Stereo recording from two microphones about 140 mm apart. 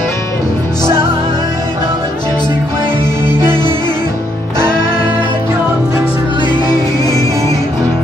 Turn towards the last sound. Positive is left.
turn(degrees=25)  # may be behind; listen again after turning